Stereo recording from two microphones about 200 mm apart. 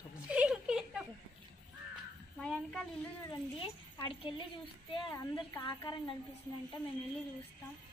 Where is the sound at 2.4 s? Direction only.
5° left (ahead or behind).